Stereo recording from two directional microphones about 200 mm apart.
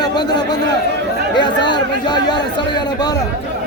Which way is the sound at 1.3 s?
20° left (ahead or behind).